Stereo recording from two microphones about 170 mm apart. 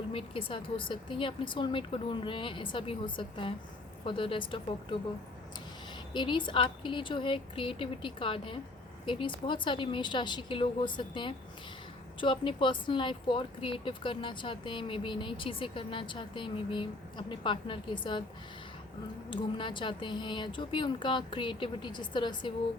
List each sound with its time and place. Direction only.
0.1 s speech: 30° left (ahead or behind)
6.1 s speech: 30° left (ahead or behind)
19.3 s speech: 30° left (ahead or behind)